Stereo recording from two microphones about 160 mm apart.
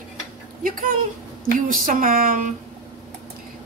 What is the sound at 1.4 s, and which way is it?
A woman's voice, 60° right (ahead or behind).